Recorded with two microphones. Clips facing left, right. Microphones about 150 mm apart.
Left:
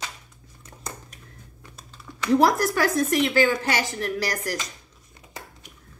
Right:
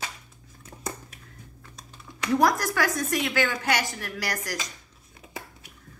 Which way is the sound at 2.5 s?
25° left (ahead or behind).